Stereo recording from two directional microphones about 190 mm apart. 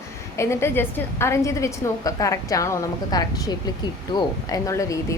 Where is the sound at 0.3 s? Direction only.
15° left (ahead or behind).